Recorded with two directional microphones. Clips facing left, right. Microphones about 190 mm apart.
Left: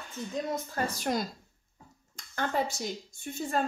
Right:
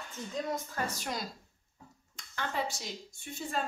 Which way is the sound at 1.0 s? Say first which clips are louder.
Left 7 dB; 50° left (ahead or behind).